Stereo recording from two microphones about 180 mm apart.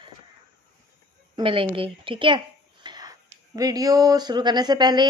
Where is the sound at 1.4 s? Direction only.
30° right (ahead or behind).